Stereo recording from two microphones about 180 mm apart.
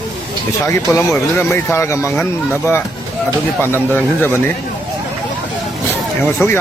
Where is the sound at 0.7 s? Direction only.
15° left (ahead or behind).